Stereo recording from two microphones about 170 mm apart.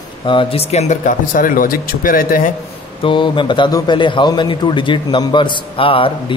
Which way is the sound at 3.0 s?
30° left (ahead or behind).